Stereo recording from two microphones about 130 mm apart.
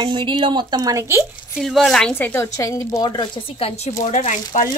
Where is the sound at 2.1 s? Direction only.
15° left (ahead or behind); by 3.9 s 45° left (ahead or behind).